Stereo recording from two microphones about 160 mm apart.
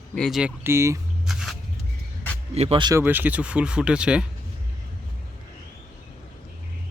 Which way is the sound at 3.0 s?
10° right (ahead or behind).